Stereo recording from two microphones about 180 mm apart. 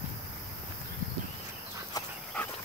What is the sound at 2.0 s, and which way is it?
Dog, 20° left (ahead or behind).